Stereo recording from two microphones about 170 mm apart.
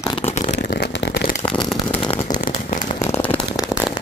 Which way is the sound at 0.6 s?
85° left.